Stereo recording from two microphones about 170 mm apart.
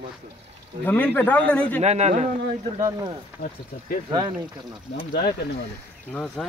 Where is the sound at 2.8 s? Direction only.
25° right (ahead or behind).